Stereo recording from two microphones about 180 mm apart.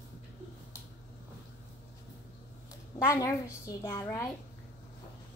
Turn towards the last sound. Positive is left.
turn(degrees=15)  # may be behind; listen again after turning